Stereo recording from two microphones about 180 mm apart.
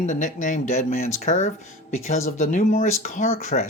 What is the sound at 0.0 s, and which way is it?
Speech, 45° left (ahead or behind).